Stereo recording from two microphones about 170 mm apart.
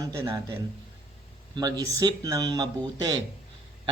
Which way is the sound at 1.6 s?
20° right (ahead or behind).